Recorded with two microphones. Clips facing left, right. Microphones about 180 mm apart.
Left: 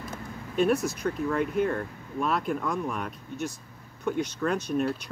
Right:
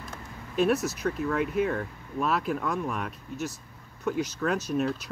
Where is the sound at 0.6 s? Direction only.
Centre (ahead or behind).